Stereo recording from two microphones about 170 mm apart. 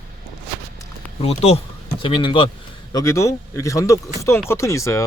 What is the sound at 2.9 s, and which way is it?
Speech, 20° left (ahead or behind).